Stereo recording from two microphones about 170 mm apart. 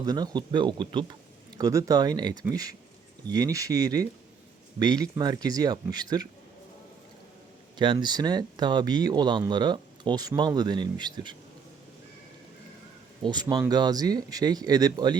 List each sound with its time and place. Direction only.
0.0 s speech: 25° right (ahead or behind)
7.8 s speech: 25° right (ahead or behind)
13.2 s speech: 25° right (ahead or behind)